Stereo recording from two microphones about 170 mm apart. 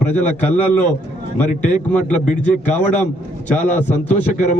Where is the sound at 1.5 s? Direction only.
45° left (ahead or behind).